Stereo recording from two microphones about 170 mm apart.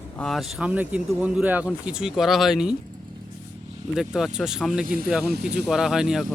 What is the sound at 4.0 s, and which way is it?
Speech, centre (ahead or behind).